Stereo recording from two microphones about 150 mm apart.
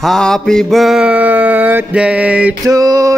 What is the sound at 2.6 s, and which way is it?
Speech, 25° right (ahead or behind).